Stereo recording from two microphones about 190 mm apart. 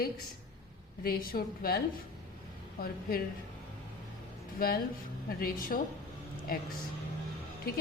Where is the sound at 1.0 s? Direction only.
50° left (ahead or behind).